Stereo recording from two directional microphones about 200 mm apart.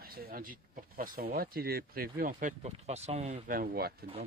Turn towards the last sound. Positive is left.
turn(degrees=-45)  # may be behind; listen again after turning